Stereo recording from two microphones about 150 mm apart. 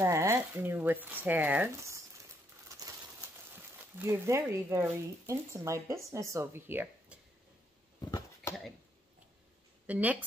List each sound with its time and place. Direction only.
0.0 s speech: 20° right (ahead or behind)
3.5 s speech: 15° right (ahead or behind)
8.0 s a sound: 25° left (ahead or behind)
9.8 s speech: 10° right (ahead or behind)